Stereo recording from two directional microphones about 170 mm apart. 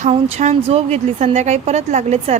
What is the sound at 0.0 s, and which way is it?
A woman's voice, 40° right (ahead or behind).